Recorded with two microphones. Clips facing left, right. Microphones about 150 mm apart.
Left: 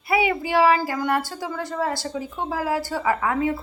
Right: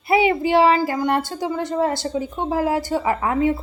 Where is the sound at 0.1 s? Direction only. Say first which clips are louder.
Right 5 dB; 25° right (ahead or behind).